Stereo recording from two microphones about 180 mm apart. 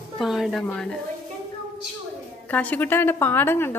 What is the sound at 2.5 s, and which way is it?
A woman's voice, 10° left (ahead or behind).